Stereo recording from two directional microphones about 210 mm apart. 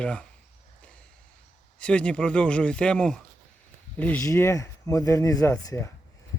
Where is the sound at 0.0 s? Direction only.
5° left (ahead or behind).